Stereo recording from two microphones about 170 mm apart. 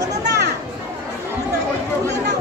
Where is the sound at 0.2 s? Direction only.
80° right.